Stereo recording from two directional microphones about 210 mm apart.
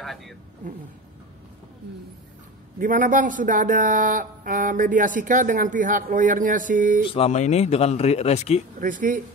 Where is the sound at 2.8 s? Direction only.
40° right (ahead or behind).